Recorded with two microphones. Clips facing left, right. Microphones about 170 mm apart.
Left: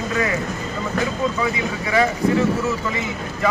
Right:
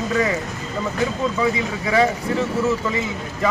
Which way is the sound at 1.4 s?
30° right (ahead or behind).